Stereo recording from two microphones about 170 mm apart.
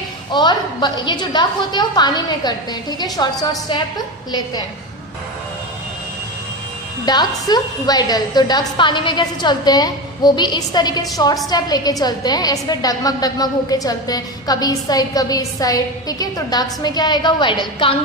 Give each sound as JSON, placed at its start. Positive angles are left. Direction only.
{"t": 0.3, "sound": "a woman's voice", "side_deg": 25}
{"t": 7.1, "sound": "a woman's voice", "side_deg": 25}